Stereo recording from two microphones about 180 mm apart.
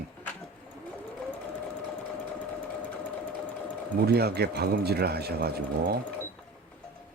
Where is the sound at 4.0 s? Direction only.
60° right (ahead or behind).